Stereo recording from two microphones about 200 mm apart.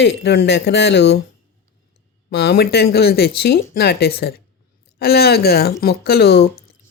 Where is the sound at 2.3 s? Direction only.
55° left (ahead or behind).